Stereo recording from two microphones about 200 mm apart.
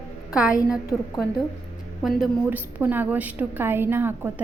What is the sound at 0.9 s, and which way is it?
A woman's voice, centre (ahead or behind).